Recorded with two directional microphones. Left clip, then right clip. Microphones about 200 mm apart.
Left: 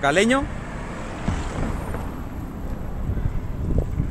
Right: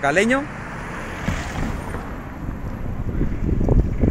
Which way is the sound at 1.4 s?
50° right (ahead or behind).